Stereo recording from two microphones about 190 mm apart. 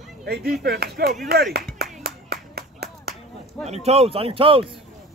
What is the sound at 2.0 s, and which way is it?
Clapping, 55° right (ahead or behind).